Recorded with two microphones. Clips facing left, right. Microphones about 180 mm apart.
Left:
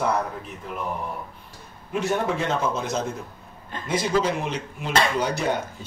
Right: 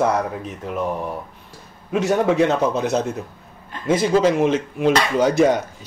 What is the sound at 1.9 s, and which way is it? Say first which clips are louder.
A man's voice: right 6 dB; 90° right.